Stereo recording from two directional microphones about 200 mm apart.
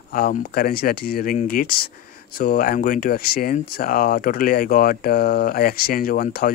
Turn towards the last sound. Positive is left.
turn(degrees=45)  # may be behind; listen again after turning